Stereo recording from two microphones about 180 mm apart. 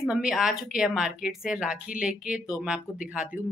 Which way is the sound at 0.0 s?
5° right (ahead or behind).